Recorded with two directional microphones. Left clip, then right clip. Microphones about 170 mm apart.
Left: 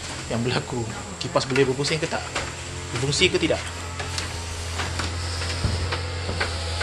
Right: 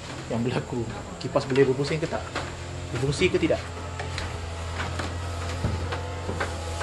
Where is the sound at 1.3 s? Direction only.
5° right (ahead or behind).